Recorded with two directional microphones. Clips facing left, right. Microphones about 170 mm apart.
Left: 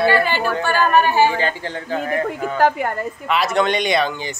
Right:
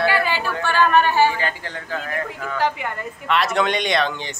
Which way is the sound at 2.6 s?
45° left (ahead or behind).